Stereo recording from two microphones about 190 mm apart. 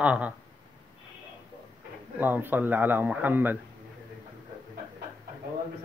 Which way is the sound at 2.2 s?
10° right (ahead or behind).